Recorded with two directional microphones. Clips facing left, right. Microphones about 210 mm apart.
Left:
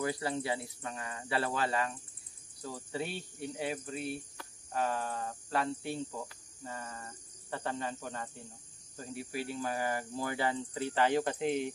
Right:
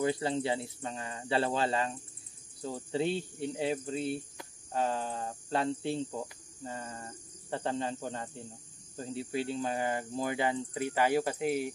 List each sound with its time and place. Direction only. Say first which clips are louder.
0.0 s speech: right 4 dB; 25° right (ahead or behind); by 11.7 s 5° right (ahead or behind)